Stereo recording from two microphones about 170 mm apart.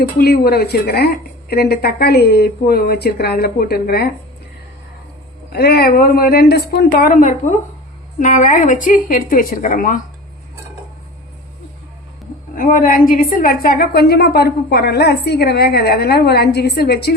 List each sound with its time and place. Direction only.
0.2 s a woman's voice: 65° left (ahead or behind)
5.5 s a woman's voice: 70° left (ahead or behind); by 10.0 s 50° left (ahead or behind)
12.5 s a woman's voice: 55° left (ahead or behind); by 17.2 s 70° left (ahead or behind)